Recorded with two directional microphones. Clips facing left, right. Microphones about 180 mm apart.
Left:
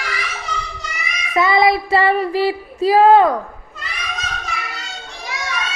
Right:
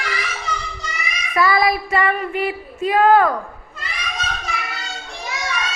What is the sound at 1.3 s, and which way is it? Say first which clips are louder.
Child singing: left 3 dB; 25° left (ahead or behind).